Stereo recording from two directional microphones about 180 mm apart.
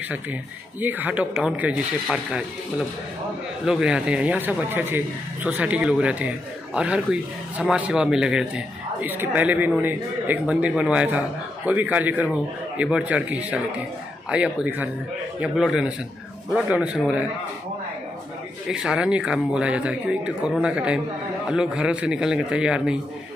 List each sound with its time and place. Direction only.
0.1 s a man's voice: 10° right (ahead or behind)
3.6 s a man's voice: 5° right (ahead or behind)
18.7 s speech: 5° right (ahead or behind)